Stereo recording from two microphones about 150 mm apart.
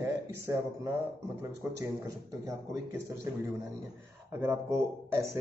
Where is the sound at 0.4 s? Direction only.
15° right (ahead or behind).